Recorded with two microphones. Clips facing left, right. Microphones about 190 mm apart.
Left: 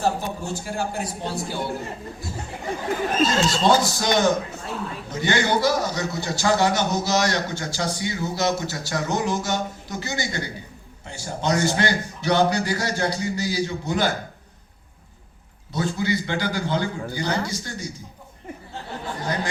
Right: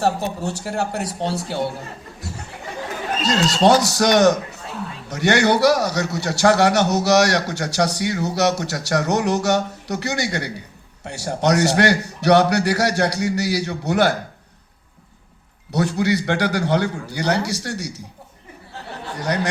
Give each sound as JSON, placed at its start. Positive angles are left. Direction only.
{"t": 0.0, "sound": "a man's voice", "side_deg": -70}
{"t": 3.2, "sound": "a man's voice", "side_deg": -75}
{"t": 15.7, "sound": "a man's voice", "side_deg": -75}
{"t": 19.1, "sound": "a sound", "side_deg": -75}